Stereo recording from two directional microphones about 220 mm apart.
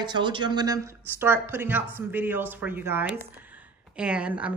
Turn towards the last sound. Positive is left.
turn(degrees=-5)  # may be behind; listen again after turning